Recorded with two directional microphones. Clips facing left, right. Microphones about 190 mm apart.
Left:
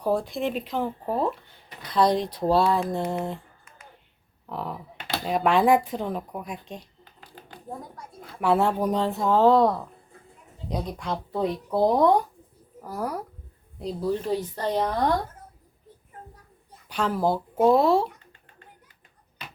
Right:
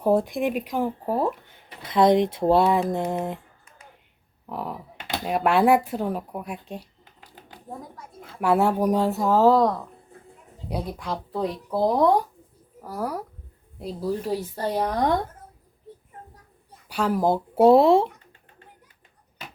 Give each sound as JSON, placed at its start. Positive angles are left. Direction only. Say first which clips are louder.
{"t": 0.0, "sound": "speech", "louder": "right 4 dB", "side_deg": -20}
{"t": 4.4, "sound": "a sound", "louder": "right 1 dB", "side_deg": -10}
{"t": 5.3, "sound": "speech", "louder": "right 1 dB", "side_deg": -10}
{"t": 7.0, "sound": "a sound", "louder": "left 2 dB", "side_deg": -20}
{"t": 8.4, "sound": "speech", "louder": "right 1 dB", "side_deg": -10}
{"t": 16.9, "sound": "speech", "louder": "right 2 dB", "side_deg": -10}
{"t": 17.5, "sound": "speech", "louder": "right 5 dB", "side_deg": -30}